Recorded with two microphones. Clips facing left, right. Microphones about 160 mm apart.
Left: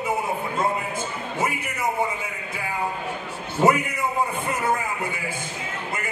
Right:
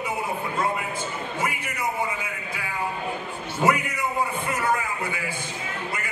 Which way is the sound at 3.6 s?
30° left (ahead or behind).